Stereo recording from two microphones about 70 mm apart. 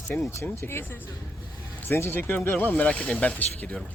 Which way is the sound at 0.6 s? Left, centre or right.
Left.